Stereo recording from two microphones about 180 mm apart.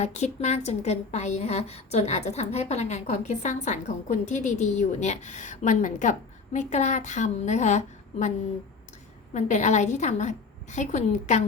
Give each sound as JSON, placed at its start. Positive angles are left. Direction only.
{"t": 0.0, "sound": "a woman's voice", "side_deg": 40}
{"t": 9.3, "sound": "a woman's voice", "side_deg": 40}